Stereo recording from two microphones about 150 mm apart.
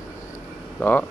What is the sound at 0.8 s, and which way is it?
Speech, 10° left (ahead or behind).